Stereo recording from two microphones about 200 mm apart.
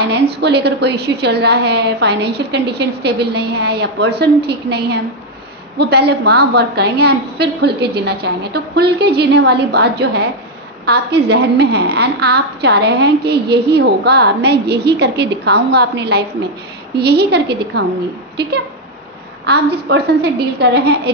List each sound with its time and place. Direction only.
0.3 s a woman's voice: 55° right (ahead or behind)